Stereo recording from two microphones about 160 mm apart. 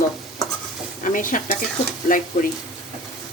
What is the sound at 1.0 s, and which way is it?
Speech, 55° left (ahead or behind).